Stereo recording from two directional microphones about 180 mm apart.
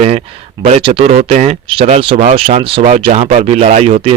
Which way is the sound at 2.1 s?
55° right (ahead or behind).